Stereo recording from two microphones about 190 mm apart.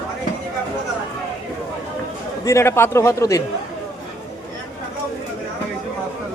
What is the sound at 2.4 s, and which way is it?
Speech, 15° left (ahead or behind).